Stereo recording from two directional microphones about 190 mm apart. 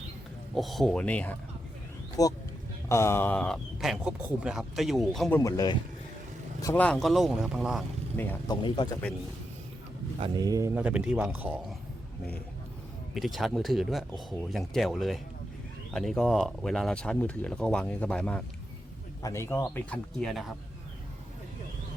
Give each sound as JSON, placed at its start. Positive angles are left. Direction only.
{"t": 0.5, "sound": "speech", "side_deg": 0}
{"t": 2.2, "sound": "speech", "side_deg": 20}
{"t": 5.4, "sound": "speech", "side_deg": 20}
{"t": 8.1, "sound": "speech", "side_deg": 10}
{"t": 8.4, "sound": "speech", "side_deg": 25}
{"t": 10.2, "sound": "a man's voice", "side_deg": -25}
{"t": 13.1, "sound": "speech", "side_deg": 0}